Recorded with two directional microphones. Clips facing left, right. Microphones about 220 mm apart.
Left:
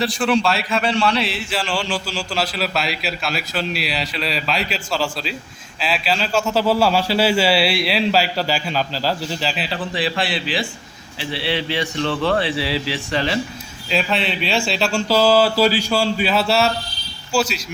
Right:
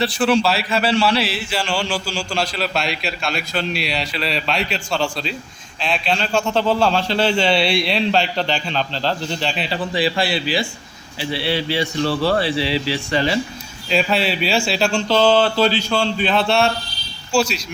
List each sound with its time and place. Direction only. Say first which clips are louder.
0.0 s a man's voice: right 1 dB; centre (ahead or behind)
11.8 s speech: right 2 dB; 35° right (ahead or behind)
12.5 s a man's voice: right 2 dB; centre (ahead or behind)